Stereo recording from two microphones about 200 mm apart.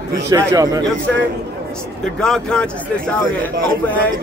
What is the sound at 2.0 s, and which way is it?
A man's voice, 5° left (ahead or behind).